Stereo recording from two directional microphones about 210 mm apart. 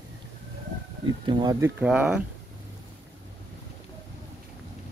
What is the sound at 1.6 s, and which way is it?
Speech, 5° right (ahead or behind).